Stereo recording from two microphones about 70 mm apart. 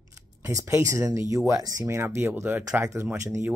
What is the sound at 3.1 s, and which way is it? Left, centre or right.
Speech, right.